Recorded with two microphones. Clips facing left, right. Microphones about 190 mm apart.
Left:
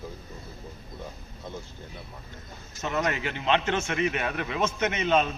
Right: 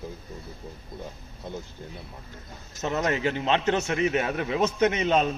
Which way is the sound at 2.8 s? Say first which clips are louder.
Right 3 dB; 35° right (ahead or behind).